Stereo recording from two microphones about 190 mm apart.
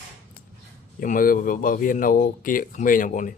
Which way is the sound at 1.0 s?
45° left (ahead or behind).